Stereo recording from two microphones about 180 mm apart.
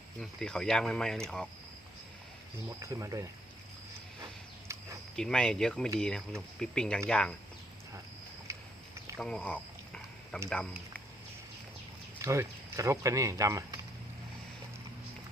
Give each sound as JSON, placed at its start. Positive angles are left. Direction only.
{"t": 0.2, "sound": "speech", "side_deg": 5}
{"t": 2.6, "sound": "speech", "side_deg": -15}
{"t": 5.1, "sound": "speech", "side_deg": 5}
{"t": 9.1, "sound": "a sound", "side_deg": 5}
{"t": 12.2, "sound": "speech", "side_deg": -15}